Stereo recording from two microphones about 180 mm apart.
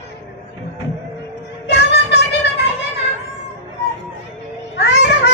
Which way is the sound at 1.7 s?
70° left (ahead or behind).